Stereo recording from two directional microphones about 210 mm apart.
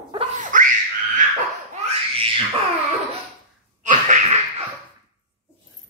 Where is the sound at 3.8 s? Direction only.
35° right (ahead or behind).